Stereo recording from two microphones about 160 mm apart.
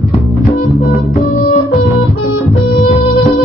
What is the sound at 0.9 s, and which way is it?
Music, 40° left (ahead or behind).